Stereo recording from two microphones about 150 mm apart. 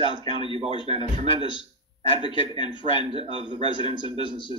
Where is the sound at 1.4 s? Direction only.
35° left (ahead or behind).